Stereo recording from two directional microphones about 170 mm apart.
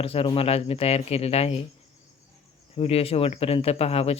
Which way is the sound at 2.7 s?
35° left (ahead or behind).